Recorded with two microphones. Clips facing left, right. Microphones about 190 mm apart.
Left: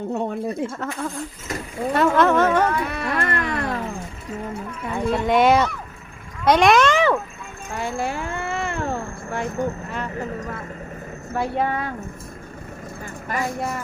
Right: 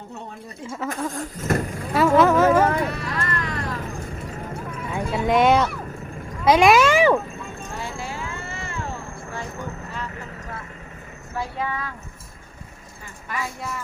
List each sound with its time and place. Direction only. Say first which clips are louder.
0.1 s speech: left 13 dB; 60° left (ahead or behind)
0.9 s a sound: right 1 dB; 45° right (ahead or behind)
1.9 s speech: right 1 dB; 5° right (ahead or behind)
2.9 s cat: left 4 dB; 60° left (ahead or behind)
5.1 s speech: left 1 dB; centre (ahead or behind)
7.9 s cat: left 6 dB; 55° left (ahead or behind)
11.3 s speech: left 5 dB; 55° left (ahead or behind)
13.2 s speech: left 5 dB; 50° left (ahead or behind)